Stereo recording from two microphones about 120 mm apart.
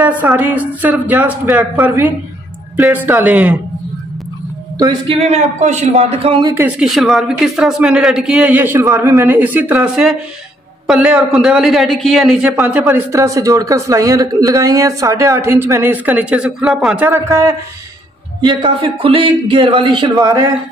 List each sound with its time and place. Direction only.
0.0 s a woman's voice: 15° right (ahead or behind)
5.0 s speech: 60° right (ahead or behind)
6.8 s a man's voice: centre (ahead or behind)
13.1 s speech: 25° right (ahead or behind); by 17.0 s 5° right (ahead or behind)
17.0 s speech: 20° right (ahead or behind)
18.4 s a man's voice: 40° right (ahead or behind)
20.2 s speech: 30° right (ahead or behind)